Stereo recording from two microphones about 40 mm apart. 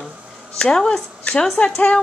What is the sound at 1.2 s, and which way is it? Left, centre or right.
Speech, left.